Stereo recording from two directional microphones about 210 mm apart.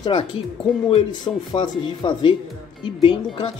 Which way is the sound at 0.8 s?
25° left (ahead or behind).